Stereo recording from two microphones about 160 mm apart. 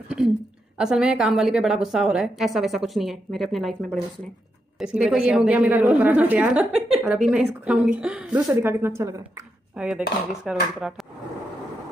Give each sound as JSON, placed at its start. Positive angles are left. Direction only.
{"t": 0.7, "sound": "a woman's voice", "side_deg": -5}
{"t": 9.8, "sound": "dishes", "side_deg": -5}
{"t": 10.4, "sound": "a woman's voice", "side_deg": -5}